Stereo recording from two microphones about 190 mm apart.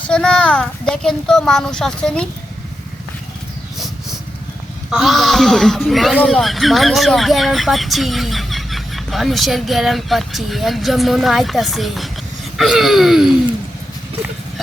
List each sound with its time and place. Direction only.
0.1 s speech: 5° left (ahead or behind)
4.9 s speech: centre (ahead or behind)